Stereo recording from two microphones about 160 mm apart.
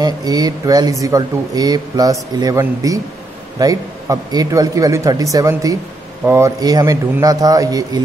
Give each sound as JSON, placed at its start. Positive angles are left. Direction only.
{"t": 0.0, "sound": "speech", "side_deg": -25}